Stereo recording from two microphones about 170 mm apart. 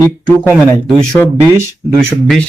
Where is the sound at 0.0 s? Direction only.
15° left (ahead or behind).